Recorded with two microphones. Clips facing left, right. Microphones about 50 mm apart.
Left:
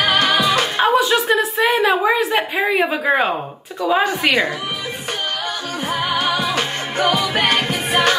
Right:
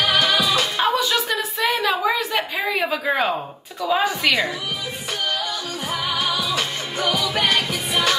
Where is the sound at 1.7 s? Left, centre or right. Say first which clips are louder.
Left 3 dB; left.